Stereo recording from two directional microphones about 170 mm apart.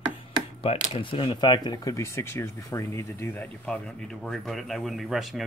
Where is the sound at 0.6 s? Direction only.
35° left (ahead or behind); by 3.7 s 10° left (ahead or behind).